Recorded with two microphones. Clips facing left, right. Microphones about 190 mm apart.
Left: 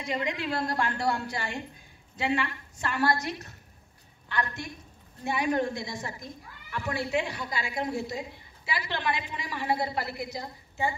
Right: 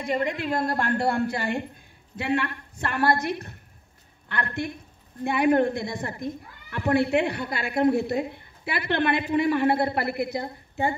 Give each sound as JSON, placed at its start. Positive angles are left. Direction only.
{"t": 0.0, "sound": "a woman's voice", "side_deg": -55}